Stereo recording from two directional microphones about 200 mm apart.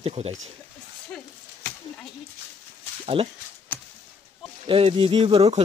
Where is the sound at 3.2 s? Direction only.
25° right (ahead or behind).